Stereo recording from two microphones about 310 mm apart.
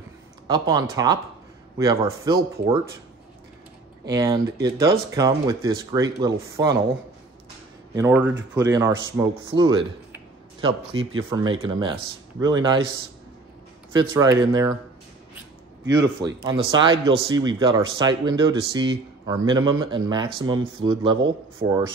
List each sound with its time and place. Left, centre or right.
0.5 s speech: centre
4.0 s speech: centre
7.9 s speech: centre
9.6 s a sound: centre
10.9 s speech: right
11.2 s speech: centre
14.0 s speech: centre
16.4 s speech: centre
21.2 s speech: right